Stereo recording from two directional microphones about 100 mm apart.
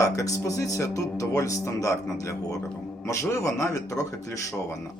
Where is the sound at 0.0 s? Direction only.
35° left (ahead or behind).